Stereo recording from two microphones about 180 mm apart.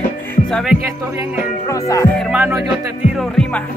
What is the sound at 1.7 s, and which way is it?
Speech, 15° left (ahead or behind).